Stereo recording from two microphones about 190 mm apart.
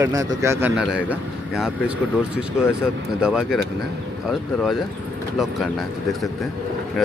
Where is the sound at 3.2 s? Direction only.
5° right (ahead or behind).